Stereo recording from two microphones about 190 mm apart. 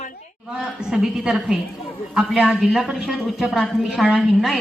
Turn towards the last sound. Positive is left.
turn(degrees=-5)  # may be behind; listen again after turning